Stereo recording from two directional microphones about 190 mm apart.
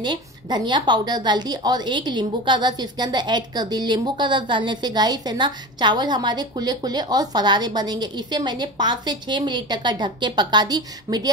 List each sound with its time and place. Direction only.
0.0 s a woman's voice: 25° right (ahead or behind)